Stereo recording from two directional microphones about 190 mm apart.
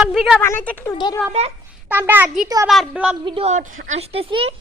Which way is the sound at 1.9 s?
10° right (ahead or behind).